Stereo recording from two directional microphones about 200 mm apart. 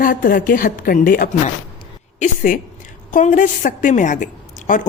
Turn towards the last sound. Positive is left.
turn(degrees=40)  # may be behind; listen again after turning